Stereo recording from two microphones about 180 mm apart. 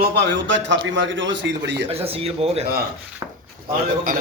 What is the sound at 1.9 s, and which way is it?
Speech, 35° right (ahead or behind).